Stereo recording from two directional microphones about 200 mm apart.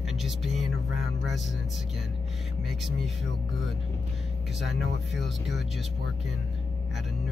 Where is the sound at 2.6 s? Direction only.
Centre (ahead or behind).